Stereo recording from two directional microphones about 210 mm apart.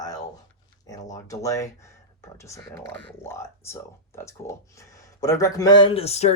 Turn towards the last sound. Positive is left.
turn(degrees=30)  # may be behind; listen again after turning